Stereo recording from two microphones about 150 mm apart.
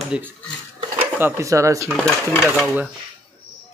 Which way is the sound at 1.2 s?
15° right (ahead or behind).